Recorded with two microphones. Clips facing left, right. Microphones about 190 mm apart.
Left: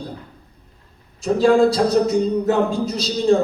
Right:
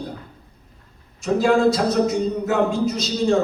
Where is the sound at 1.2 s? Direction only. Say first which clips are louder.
Left 2 dB; 35° left (ahead or behind).